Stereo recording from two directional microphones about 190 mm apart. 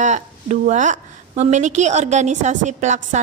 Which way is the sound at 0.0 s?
40° right (ahead or behind).